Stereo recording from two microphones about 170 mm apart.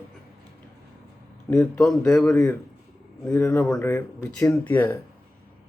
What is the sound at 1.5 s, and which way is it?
Speech, 5° left (ahead or behind).